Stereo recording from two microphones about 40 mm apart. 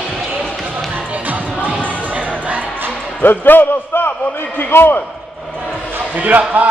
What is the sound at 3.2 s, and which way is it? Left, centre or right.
Speech, left.